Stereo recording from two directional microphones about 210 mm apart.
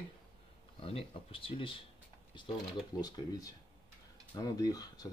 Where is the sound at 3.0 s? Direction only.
15° left (ahead or behind).